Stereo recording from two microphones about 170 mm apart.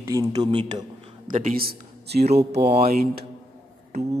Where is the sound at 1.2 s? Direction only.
50° right (ahead or behind).